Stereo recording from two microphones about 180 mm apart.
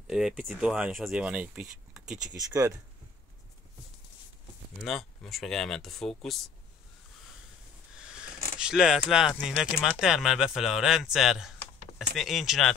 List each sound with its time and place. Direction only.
0.0 s speech: 5° right (ahead or behind)
2.3 s speech: 15° right (ahead or behind)
4.8 s speech: centre (ahead or behind)
8.0 s zipper: 5° right (ahead or behind)
8.5 s speech: 5° right (ahead or behind)